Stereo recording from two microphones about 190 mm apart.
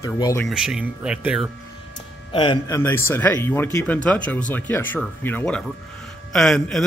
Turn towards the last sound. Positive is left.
turn(degrees=0)  # may be behind; listen again after turning